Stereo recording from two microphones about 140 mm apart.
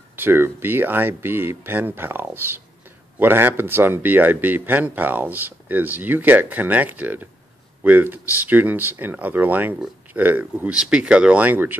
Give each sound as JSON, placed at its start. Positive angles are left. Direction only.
{"t": 0.1, "sound": "a man's voice", "side_deg": -15}